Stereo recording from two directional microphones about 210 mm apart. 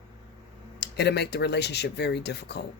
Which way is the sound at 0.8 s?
50° left (ahead or behind).